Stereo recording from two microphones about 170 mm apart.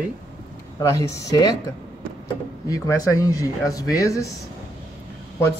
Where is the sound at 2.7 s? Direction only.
20° left (ahead or behind).